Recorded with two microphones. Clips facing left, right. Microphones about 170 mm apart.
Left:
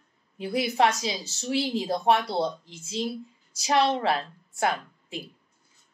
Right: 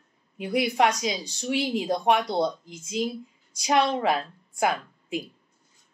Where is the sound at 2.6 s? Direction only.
30° left (ahead or behind).